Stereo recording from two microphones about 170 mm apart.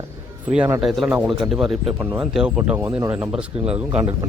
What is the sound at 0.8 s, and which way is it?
Speech, centre (ahead or behind).